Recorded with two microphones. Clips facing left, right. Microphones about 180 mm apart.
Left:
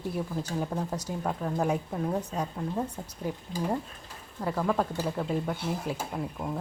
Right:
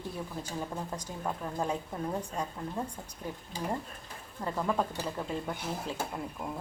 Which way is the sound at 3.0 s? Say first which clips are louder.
Left 5 dB; 20° left (ahead or behind).